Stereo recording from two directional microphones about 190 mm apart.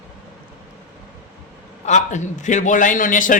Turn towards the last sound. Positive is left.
turn(degrees=45)  # may be behind; listen again after turning